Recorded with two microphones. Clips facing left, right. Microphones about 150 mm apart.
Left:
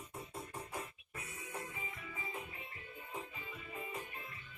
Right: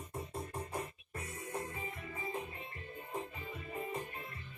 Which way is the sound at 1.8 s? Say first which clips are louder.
Right 5 dB; 35° right (ahead or behind).